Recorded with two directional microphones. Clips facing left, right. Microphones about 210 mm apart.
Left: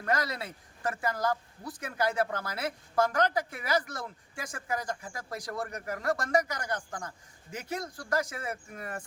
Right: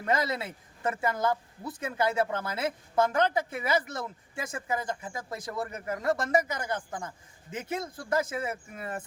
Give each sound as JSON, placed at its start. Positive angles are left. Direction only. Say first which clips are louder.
{"t": 0.0, "sound": "speech", "louder": "right 3 dB", "side_deg": -25}